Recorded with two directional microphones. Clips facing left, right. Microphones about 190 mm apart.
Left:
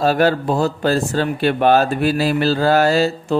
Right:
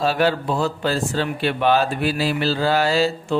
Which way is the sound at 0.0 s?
45° left (ahead or behind).